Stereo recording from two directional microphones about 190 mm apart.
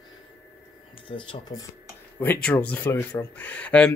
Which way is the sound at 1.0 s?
25° left (ahead or behind).